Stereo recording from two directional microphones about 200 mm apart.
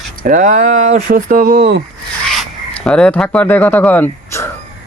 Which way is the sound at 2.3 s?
Centre (ahead or behind).